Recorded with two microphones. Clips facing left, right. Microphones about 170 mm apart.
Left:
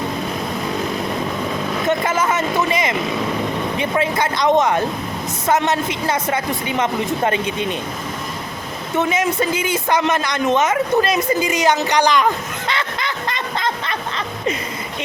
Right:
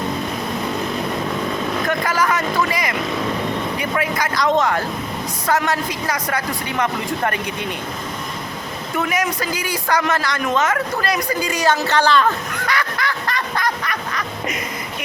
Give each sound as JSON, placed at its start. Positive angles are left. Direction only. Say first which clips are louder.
{"t": 1.9, "sound": "a sound", "louder": "left 2 dB", "side_deg": 25}
{"t": 3.8, "sound": "vehicle", "louder": "left 6 dB", "side_deg": 25}
{"t": 5.5, "sound": "a woman's voice", "louder": "left 2 dB", "side_deg": 20}
{"t": 9.0, "sound": "a man's voice", "louder": "left 3 dB", "side_deg": 25}